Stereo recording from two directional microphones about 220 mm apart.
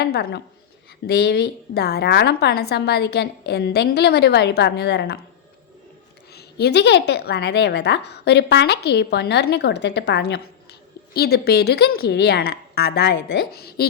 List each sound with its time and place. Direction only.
0.0 s a woman's voice: 45° left (ahead or behind)
6.3 s a sound: 50° left (ahead or behind)
7.1 s a woman's voice: 50° left (ahead or behind)